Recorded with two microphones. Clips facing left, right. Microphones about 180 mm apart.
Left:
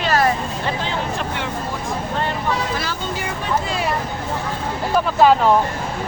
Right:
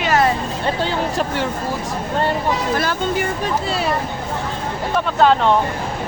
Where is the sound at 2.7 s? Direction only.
50° right (ahead or behind).